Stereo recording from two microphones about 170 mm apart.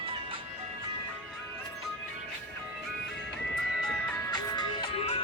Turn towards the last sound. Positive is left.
turn(degrees=35)  # may be behind; listen again after turning